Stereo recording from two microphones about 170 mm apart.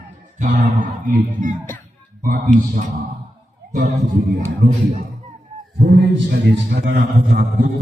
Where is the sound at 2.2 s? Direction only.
55° right (ahead or behind).